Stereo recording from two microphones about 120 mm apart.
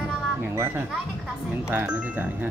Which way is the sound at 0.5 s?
20° right (ahead or behind).